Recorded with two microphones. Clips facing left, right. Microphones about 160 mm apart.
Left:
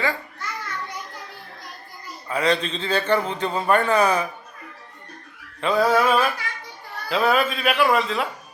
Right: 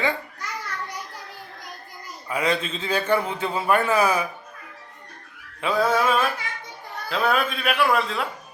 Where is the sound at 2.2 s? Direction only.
10° right (ahead or behind).